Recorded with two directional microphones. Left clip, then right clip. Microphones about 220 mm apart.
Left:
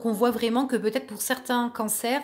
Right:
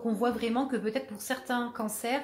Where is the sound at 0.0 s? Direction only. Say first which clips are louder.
Left 6 dB; 50° left (ahead or behind).